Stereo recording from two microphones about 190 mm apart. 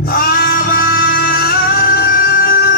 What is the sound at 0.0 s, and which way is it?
Music, 50° left (ahead or behind).